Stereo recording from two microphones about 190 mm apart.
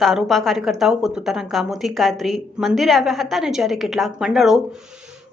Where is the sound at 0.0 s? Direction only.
Centre (ahead or behind).